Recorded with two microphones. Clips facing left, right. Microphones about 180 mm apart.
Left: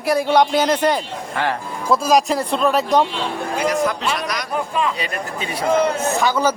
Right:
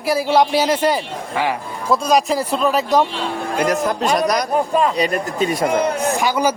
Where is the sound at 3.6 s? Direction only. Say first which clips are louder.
Right 2 dB; 45° right (ahead or behind).